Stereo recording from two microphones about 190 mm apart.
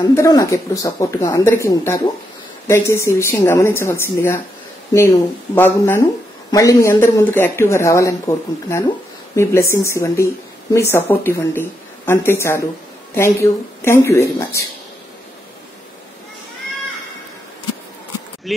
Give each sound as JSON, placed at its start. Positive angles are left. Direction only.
{"t": 0.0, "sound": "speech", "side_deg": 20}